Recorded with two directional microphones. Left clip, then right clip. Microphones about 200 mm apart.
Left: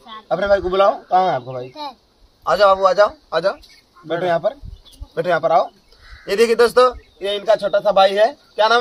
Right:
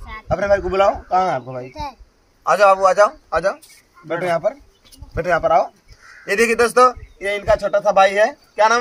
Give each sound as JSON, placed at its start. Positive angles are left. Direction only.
{"t": 0.3, "sound": "a man's voice", "side_deg": -15}
{"t": 1.7, "sound": "speech", "side_deg": 0}
{"t": 2.4, "sound": "a man's voice", "side_deg": -20}